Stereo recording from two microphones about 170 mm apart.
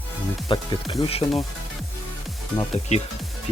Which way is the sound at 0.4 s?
30° left (ahead or behind).